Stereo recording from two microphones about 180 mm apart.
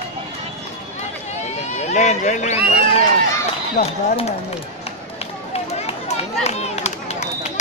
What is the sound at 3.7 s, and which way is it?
Speech, 35° left (ahead or behind).